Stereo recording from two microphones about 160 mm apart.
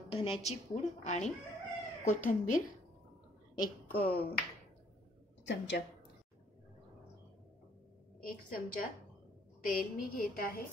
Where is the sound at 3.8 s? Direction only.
70° left (ahead or behind).